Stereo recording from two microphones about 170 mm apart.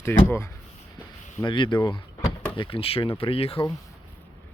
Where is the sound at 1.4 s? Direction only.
30° left (ahead or behind).